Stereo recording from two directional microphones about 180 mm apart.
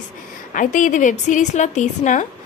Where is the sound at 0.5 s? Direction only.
45° left (ahead or behind).